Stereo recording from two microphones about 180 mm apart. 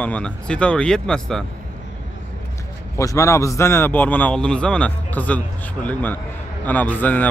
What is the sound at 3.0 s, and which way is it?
A man's voice, 15° left (ahead or behind).